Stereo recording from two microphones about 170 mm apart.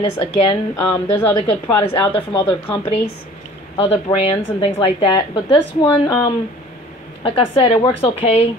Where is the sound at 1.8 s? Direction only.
30° left (ahead or behind).